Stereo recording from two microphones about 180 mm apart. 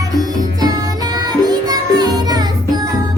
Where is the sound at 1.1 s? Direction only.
20° right (ahead or behind).